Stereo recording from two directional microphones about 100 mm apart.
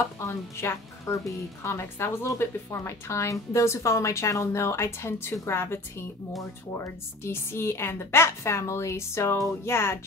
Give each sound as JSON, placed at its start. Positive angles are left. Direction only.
{"t": 0.6, "sound": "a woman's voice", "side_deg": 25}
{"t": 7.2, "sound": "a woman's voice", "side_deg": 25}